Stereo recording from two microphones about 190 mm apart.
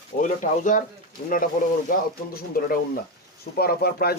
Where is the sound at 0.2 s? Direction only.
45° left (ahead or behind).